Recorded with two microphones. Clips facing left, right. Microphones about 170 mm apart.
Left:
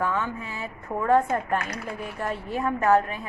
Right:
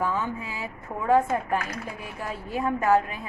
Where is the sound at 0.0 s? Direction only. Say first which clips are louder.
Even; 10° right (ahead or behind).